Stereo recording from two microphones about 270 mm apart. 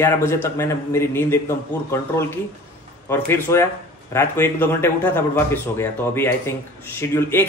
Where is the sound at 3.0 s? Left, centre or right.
Centre.